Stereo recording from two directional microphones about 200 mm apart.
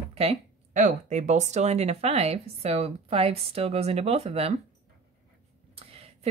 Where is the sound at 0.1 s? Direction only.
30° right (ahead or behind).